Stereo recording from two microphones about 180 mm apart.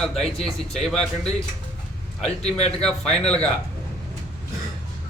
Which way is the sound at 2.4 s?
35° left (ahead or behind).